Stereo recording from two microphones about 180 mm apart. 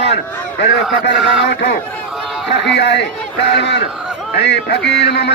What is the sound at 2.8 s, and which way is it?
A man's voice, 70° left (ahead or behind).